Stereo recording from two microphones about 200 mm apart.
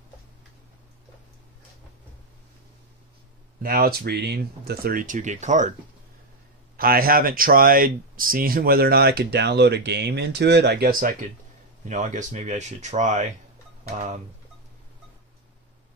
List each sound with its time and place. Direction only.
3.6 s speech: 50° right (ahead or behind)
6.8 s speech: 45° right (ahead or behind)